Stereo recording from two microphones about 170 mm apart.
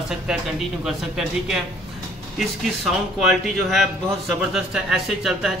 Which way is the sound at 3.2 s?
Centre (ahead or behind).